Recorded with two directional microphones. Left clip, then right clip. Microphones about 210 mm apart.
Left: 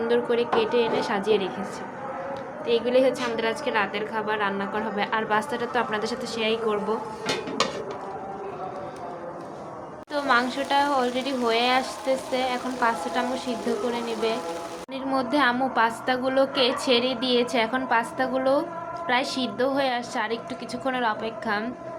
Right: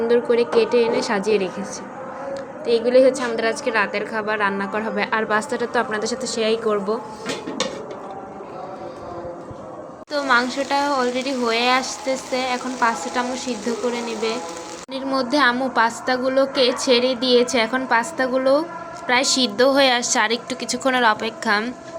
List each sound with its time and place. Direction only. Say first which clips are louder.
0.1 s a woman's voice: right 5 dB; 20° right (ahead or behind)
10.1 s a woman's voice: right 4 dB; 15° right (ahead or behind)